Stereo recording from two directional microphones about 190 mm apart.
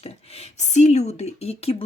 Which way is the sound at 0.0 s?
35° left (ahead or behind).